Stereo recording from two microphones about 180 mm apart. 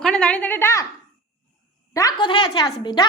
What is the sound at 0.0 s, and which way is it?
Speech, 5° left (ahead or behind).